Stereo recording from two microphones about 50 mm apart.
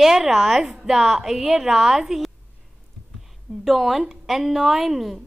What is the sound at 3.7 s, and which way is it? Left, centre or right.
A woman's voice, centre.